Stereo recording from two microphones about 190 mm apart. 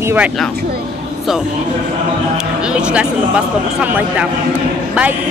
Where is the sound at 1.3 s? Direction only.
Centre (ahead or behind).